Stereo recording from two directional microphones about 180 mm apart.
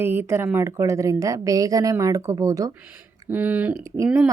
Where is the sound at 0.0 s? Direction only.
10° right (ahead or behind).